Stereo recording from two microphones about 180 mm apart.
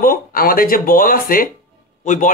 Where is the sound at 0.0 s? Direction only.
55° left (ahead or behind).